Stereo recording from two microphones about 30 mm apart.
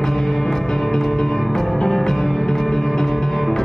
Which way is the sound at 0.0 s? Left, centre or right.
Centre.